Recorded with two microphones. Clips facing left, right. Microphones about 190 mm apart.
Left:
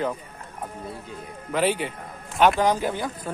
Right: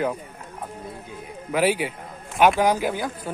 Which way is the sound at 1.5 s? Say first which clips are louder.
Right 2 dB; 5° right (ahead or behind).